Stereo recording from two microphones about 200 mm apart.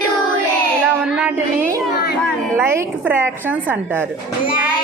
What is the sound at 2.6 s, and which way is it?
A woman's voice, 10° right (ahead or behind).